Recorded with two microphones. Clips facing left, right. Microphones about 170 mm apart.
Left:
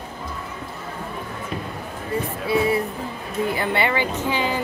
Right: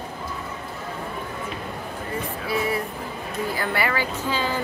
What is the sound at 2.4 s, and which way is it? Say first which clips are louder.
Music: left 5 dB; 25° left (ahead or behind).